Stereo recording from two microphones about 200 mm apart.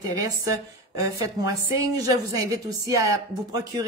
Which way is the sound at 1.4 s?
20° right (ahead or behind).